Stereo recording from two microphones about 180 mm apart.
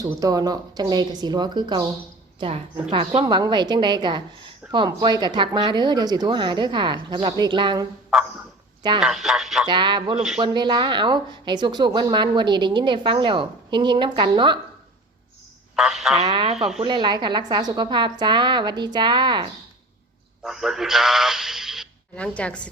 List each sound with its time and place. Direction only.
0.0 s speech: 20° right (ahead or behind)
8.1 s a man's voice: centre (ahead or behind)
9.6 s speech: 25° right (ahead or behind)
15.7 s a man's voice: centre (ahead or behind)
16.2 s speech: 25° right (ahead or behind)
16.6 s a man's voice: centre (ahead or behind)
16.8 s speech: 25° right (ahead or behind)
20.4 s speech: centre (ahead or behind)